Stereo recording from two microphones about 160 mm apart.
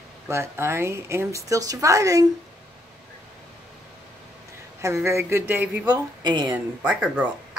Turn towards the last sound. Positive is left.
turn(degrees=-10)  # may be behind; listen again after turning